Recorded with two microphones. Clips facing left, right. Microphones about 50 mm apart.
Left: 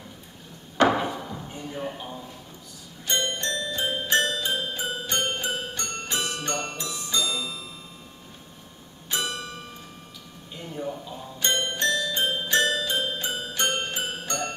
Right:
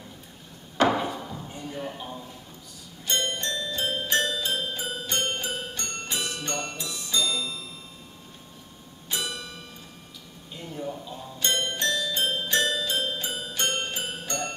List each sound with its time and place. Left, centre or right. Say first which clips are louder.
0.7 s a sound: left 2 dB; centre
3.1 s music: left 1 dB; centre
9.3 s music: left 3 dB; centre
10.5 s music: left 1 dB; centre